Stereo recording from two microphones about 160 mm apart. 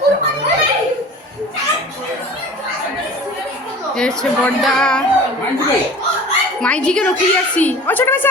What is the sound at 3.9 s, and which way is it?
Speech, 5° left (ahead or behind).